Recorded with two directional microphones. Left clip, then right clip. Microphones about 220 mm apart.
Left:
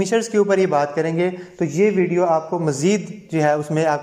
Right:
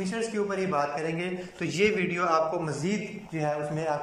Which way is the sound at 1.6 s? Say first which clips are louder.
Left 8 dB; 25° left (ahead or behind).